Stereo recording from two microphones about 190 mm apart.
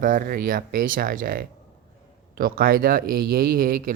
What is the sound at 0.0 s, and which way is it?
Speech, 45° right (ahead or behind).